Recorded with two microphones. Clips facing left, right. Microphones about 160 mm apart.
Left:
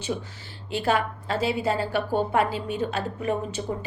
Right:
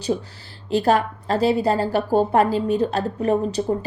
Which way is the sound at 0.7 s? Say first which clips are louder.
Right 6 dB; 40° right (ahead or behind).